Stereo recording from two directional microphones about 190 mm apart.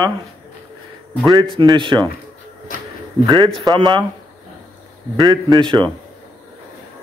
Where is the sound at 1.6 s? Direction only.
25° right (ahead or behind).